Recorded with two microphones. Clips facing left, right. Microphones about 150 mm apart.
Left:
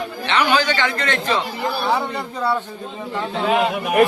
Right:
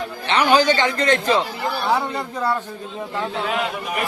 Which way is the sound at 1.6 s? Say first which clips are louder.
Even; centre (ahead or behind).